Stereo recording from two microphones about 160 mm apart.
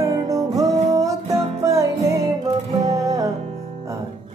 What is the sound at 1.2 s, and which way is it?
Music, 40° right (ahead or behind).